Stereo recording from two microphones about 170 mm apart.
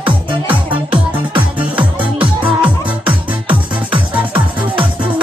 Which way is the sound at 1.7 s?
10° right (ahead or behind).